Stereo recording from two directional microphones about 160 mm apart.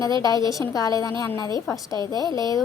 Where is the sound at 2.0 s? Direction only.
25° left (ahead or behind).